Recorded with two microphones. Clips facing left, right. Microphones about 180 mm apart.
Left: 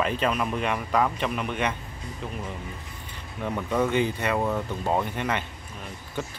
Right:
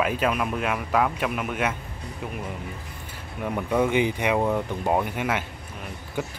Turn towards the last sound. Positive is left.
turn(degrees=-10)  # may be behind; listen again after turning